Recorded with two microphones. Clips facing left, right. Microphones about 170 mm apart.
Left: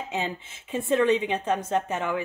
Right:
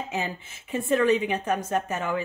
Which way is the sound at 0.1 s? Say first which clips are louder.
Left 1 dB; 20° left (ahead or behind).